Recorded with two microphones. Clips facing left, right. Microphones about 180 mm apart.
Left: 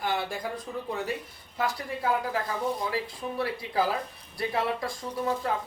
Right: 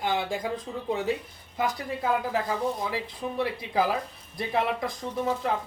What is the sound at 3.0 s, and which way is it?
Speech, 20° right (ahead or behind).